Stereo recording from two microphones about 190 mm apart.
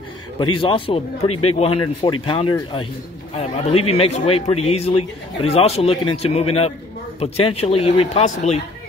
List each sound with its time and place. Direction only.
0.4 s speech: 25° left (ahead or behind)